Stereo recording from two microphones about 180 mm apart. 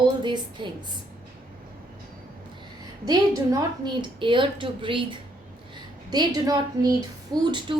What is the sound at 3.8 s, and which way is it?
A woman's voice, 25° right (ahead or behind).